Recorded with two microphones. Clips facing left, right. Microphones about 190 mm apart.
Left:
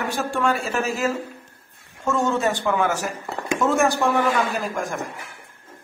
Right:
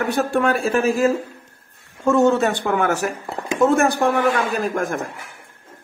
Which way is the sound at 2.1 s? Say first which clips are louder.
Right 6 dB; 65° right (ahead or behind).